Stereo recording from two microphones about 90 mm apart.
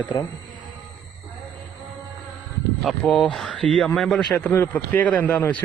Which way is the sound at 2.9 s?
5° left (ahead or behind).